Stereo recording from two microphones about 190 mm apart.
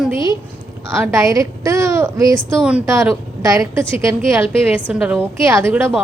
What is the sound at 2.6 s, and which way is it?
A woman's voice, 5° right (ahead or behind).